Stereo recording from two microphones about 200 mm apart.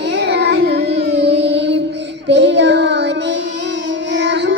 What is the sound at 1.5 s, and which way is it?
Music, 60° right (ahead or behind).